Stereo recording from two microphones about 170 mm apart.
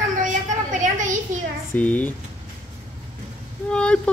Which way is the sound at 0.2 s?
50° right (ahead or behind).